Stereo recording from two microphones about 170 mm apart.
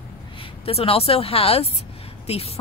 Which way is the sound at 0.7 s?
35° left (ahead or behind).